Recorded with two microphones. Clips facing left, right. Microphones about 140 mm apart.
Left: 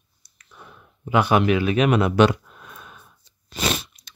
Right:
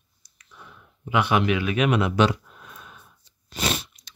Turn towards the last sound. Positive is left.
turn(degrees=90)